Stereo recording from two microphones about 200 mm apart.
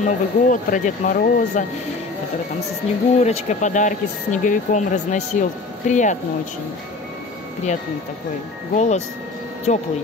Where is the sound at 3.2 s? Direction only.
35° left (ahead or behind).